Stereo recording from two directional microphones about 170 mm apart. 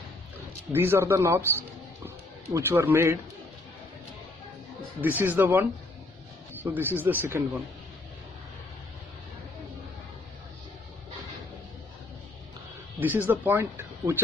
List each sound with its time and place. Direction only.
0.7 s speech: 15° right (ahead or behind)
2.0 s music: 15° right (ahead or behind)
5.0 s speech: 10° right (ahead or behind)
13.0 s speech: 10° right (ahead or behind)